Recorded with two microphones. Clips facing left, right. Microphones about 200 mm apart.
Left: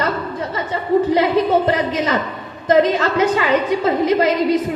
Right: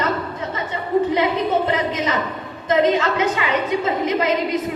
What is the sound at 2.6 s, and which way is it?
A woman's voice, 35° left (ahead or behind).